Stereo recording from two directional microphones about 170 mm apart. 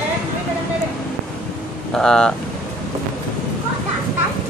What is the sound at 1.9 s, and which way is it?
Speech, 5° left (ahead or behind).